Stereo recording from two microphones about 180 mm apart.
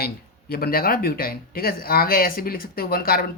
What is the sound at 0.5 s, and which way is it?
Speech, 55° left (ahead or behind).